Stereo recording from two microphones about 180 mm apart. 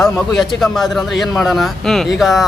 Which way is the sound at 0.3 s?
Centre (ahead or behind).